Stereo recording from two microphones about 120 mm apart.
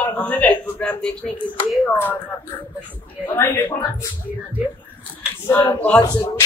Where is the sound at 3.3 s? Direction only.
20° left (ahead or behind).